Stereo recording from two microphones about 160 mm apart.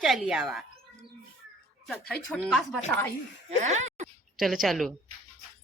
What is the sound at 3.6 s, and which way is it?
Speech, 45° right (ahead or behind).